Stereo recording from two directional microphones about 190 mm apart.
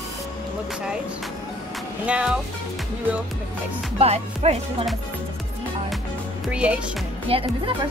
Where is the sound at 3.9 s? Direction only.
35° right (ahead or behind).